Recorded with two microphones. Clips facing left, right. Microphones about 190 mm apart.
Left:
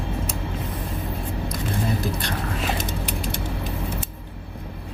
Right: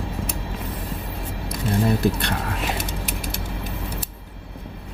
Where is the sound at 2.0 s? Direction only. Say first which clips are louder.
Right 5 dB; 60° right (ahead or behind).